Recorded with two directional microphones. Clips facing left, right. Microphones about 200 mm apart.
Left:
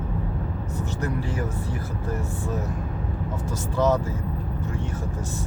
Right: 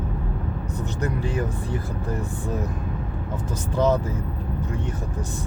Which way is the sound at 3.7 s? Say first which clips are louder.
Right 1 dB; 15° right (ahead or behind).